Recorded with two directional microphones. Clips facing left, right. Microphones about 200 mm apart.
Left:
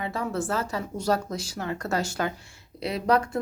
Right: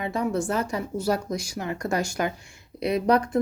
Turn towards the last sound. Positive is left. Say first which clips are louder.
# right 3 dB
turn(degrees=-20)  # may be behind; listen again after turning